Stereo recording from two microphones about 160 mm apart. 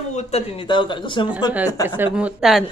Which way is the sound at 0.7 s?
30° left (ahead or behind).